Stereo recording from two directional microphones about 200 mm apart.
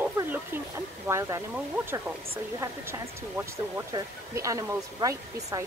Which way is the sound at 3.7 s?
15° right (ahead or behind).